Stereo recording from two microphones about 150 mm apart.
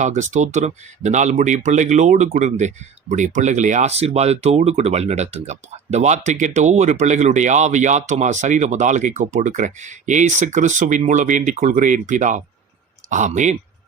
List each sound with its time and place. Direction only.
0.0 s speech: 55° right (ahead or behind)